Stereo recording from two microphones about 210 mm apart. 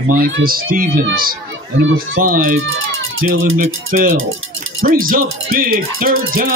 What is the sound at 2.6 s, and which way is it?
Speech, 70° right (ahead or behind).